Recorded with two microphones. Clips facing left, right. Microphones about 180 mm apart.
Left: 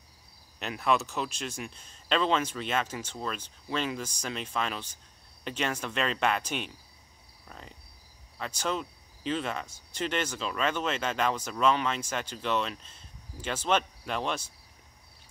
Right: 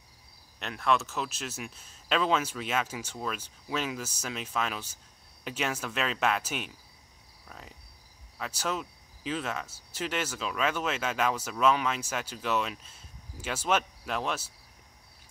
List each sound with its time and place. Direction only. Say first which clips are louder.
0.6 s speech: left 1 dB; centre (ahead or behind)
7.4 s cricket: left 1 dB; centre (ahead or behind)
8.4 s speech: left 1 dB; 5° right (ahead or behind)